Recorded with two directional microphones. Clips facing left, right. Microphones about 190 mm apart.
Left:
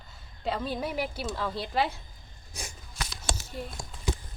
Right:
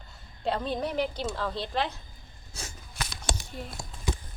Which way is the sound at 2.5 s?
15° left (ahead or behind).